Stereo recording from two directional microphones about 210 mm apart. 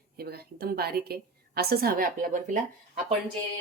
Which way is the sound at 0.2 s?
50° right (ahead or behind).